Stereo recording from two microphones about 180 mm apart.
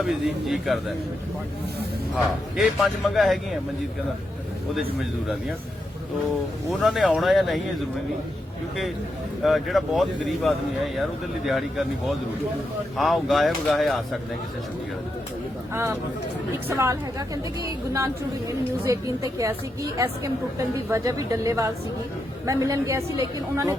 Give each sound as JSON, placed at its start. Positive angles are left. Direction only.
{"t": 0.0, "sound": "a man's voice", "side_deg": 0}
{"t": 2.1, "sound": "a man's voice", "side_deg": 0}
{"t": 4.7, "sound": "a man's voice", "side_deg": 0}
{"t": 6.7, "sound": "a man's voice", "side_deg": -5}
{"t": 9.4, "sound": "a man's voice", "side_deg": 0}
{"t": 16.6, "sound": "a woman's voice", "side_deg": -15}